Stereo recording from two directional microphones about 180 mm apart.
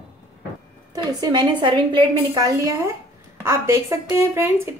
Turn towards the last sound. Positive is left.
turn(degrees=-15)  # may be behind; listen again after turning